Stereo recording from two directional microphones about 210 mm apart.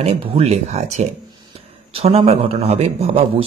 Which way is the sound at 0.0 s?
30° right (ahead or behind).